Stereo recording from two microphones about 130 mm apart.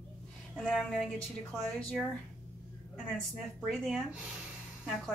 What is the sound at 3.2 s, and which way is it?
A woman's voice, centre (ahead or behind).